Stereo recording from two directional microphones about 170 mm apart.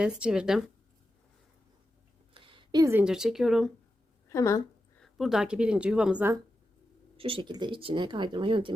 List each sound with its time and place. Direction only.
0.0 s speech: 5° right (ahead or behind)
2.3 s a sound: 30° right (ahead or behind)
2.8 s speech: 10° right (ahead or behind)
4.3 s speech: 20° left (ahead or behind)
5.0 s speech: centre (ahead or behind)
7.2 s speech: 30° right (ahead or behind)